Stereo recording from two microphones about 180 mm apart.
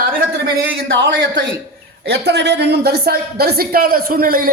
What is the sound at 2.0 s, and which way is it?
A woman's voice, 65° right (ahead or behind).